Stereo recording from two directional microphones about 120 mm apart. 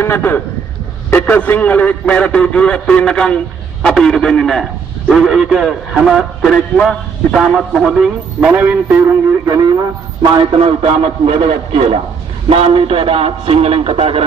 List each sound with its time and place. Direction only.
0.0 s a man's voice: 20° left (ahead or behind); by 9.0 s 15° right (ahead or behind)
10.3 s a man's voice: 55° right (ahead or behind)